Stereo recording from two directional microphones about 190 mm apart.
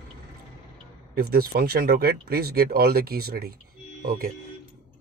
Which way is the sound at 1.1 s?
55° right (ahead or behind).